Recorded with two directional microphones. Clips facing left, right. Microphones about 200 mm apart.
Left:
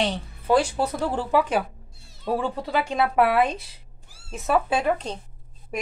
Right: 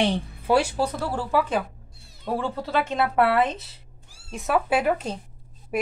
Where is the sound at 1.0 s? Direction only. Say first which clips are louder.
Left 2 dB; 15° left (ahead or behind).